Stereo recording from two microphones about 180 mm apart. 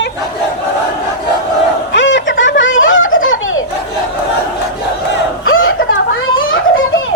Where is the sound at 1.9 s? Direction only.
90° left.